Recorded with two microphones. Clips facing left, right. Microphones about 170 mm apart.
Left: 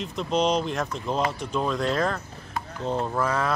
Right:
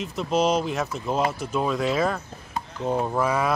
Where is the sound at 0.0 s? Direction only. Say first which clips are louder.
Right 1 dB; 5° right (ahead or behind).